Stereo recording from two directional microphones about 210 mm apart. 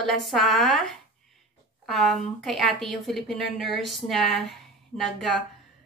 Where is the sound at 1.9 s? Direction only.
Centre (ahead or behind).